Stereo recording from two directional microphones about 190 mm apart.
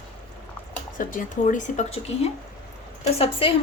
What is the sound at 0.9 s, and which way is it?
A woman's voice, 45° left (ahead or behind).